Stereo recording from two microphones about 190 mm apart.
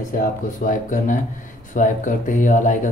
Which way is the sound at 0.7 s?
45° left (ahead or behind).